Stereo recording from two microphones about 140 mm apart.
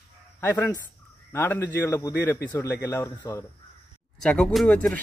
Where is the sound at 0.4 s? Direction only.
15° left (ahead or behind).